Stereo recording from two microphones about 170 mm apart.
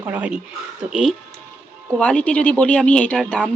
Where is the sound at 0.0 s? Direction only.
10° right (ahead or behind).